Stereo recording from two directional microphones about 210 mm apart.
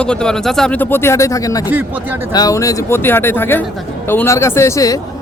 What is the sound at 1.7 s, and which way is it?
Speech, 10° right (ahead or behind).